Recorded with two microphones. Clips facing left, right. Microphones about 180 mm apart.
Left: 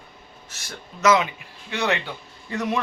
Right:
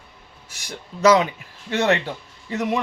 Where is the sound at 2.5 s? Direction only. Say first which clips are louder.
Right 2 dB; 20° right (ahead or behind).